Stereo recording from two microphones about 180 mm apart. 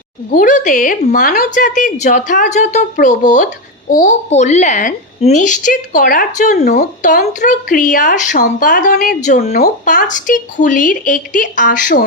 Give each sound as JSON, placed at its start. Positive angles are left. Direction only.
{"t": 0.3, "sound": "a woman's voice", "side_deg": 50}
{"t": 9.5, "sound": "a woman's voice", "side_deg": 60}